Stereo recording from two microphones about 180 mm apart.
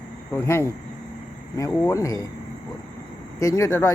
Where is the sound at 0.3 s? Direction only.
15° left (ahead or behind).